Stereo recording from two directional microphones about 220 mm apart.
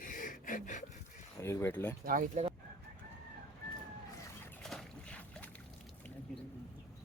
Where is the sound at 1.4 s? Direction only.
10° left (ahead or behind).